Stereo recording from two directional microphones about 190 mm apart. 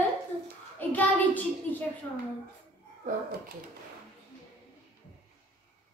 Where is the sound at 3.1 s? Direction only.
40° right (ahead or behind).